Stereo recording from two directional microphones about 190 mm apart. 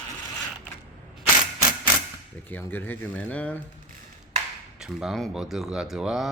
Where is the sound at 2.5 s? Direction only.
10° left (ahead or behind).